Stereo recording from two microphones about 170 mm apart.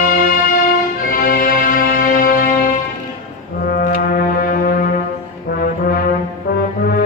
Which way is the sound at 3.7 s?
60° left (ahead or behind).